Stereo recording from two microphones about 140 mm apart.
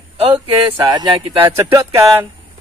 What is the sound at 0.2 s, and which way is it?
Speech, 35° right (ahead or behind).